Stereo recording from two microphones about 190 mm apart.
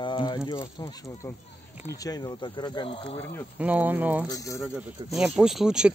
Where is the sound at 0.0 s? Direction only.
25° left (ahead or behind).